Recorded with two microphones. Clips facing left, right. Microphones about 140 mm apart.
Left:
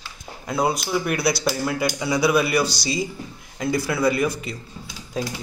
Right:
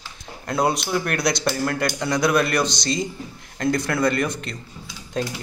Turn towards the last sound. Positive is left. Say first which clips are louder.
# right 1 dB
turn(degrees=5)  # may be behind; listen again after turning